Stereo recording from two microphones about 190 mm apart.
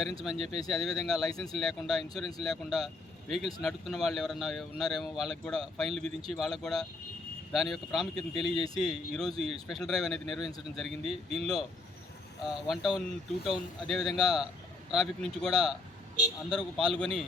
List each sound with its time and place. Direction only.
0.7 s speech: centre (ahead or behind)